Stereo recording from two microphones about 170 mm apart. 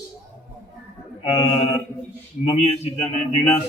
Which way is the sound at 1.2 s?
35° left (ahead or behind).